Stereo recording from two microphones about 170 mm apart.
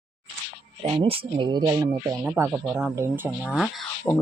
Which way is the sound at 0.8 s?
30° right (ahead or behind).